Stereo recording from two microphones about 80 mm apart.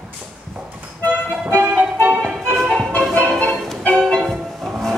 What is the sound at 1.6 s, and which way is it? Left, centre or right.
Music, right.